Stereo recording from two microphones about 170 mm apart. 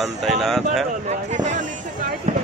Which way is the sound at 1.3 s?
45° right (ahead or behind).